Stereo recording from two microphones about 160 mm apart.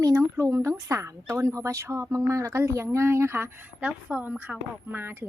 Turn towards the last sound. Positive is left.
turn(degrees=-10)  # may be behind; listen again after turning